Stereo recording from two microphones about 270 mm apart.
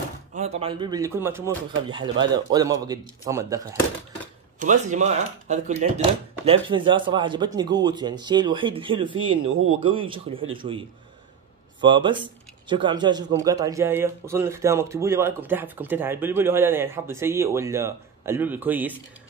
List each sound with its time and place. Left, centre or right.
0.3 s speech: right
4.6 s speech: right
11.8 s speech: centre